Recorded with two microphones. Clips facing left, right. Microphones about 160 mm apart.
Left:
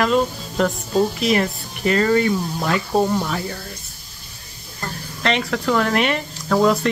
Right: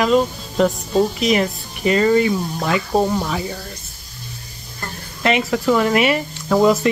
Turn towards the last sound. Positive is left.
turn(degrees=-5)  # may be behind; listen again after turning